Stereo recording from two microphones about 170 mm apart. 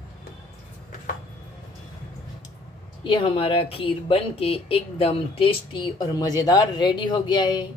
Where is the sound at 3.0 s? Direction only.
30° left (ahead or behind).